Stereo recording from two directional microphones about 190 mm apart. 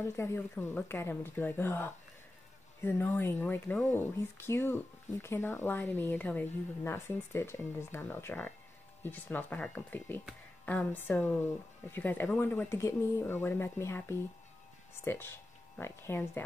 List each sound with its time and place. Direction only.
0.0 s speech: 15° left (ahead or behind)